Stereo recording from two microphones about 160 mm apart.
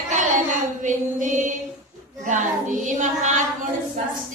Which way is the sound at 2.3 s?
50° right (ahead or behind).